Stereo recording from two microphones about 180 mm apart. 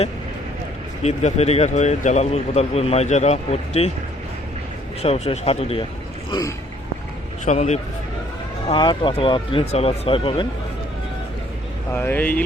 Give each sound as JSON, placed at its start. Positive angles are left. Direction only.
{"t": 1.0, "sound": "speech", "side_deg": 35}
{"t": 5.0, "sound": "speech", "side_deg": 35}
{"t": 7.4, "sound": "speech", "side_deg": 40}
{"t": 8.6, "sound": "speech", "side_deg": 25}
{"t": 11.9, "sound": "speech", "side_deg": 10}